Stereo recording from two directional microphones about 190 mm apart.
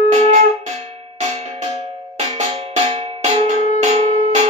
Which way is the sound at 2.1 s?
35° right (ahead or behind).